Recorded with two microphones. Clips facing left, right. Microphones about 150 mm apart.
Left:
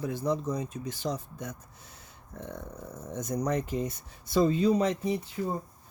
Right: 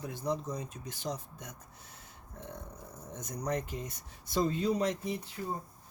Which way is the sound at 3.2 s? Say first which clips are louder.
Left 6 dB; 90° left.